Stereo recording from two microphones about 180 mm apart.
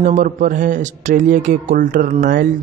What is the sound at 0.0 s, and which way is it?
A man's voice, 45° right (ahead or behind).